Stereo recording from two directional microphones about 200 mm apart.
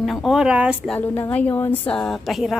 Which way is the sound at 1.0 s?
10° left (ahead or behind).